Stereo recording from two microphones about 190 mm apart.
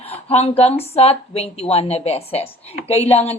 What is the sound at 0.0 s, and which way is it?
A woman's voice, 35° left (ahead or behind).